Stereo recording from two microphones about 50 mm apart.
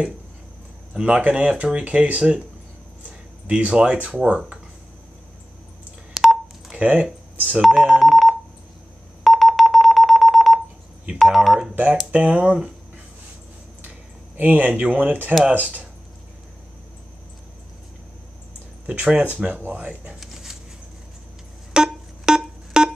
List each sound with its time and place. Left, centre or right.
1.0 s speech: right
3.4 s speech: right
6.7 s a sound: right
7.6 s speech: centre
8.0 s telephone: centre
9.2 s telephone dialing: centre
11.1 s speech: centre
11.7 s speech: right
13.8 s speech: right
18.9 s speech: right
20.2 s a sound: centre
21.7 s music: centre